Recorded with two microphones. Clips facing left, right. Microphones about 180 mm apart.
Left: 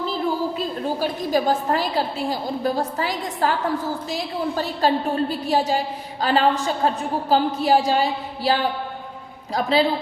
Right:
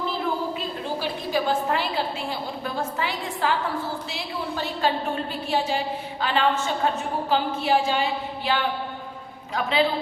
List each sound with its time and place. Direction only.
0.9 s a woman's voice: 40° left (ahead or behind)